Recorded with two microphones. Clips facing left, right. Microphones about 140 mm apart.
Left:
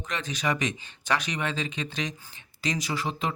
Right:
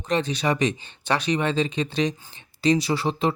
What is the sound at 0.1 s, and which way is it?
Speech, 30° right (ahead or behind).